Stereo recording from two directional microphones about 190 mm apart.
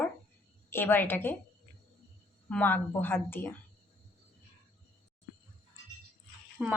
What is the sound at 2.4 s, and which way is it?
Speech, 10° left (ahead or behind).